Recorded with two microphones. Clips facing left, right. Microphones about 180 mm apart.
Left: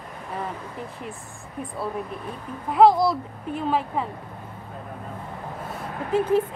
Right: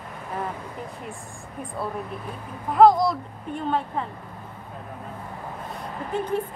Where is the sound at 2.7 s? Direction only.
5° left (ahead or behind).